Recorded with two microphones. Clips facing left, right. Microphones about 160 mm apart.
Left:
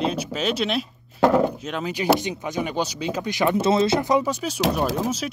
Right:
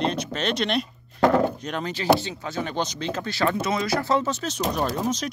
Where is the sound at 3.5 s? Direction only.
30° left (ahead or behind); by 5.3 s 5° left (ahead or behind).